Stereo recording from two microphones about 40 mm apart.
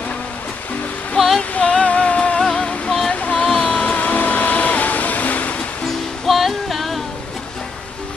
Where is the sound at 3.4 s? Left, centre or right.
Left.